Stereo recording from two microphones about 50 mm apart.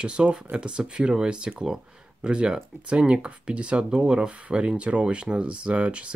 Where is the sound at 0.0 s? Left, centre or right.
Right.